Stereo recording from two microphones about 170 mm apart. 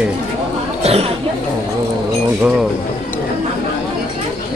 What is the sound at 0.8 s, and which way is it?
Speech, 35° right (ahead or behind).